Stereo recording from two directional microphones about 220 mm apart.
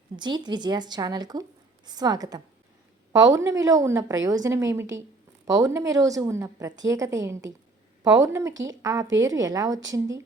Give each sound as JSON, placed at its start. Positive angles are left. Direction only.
{"t": 0.2, "sound": "a woman's voice", "side_deg": -20}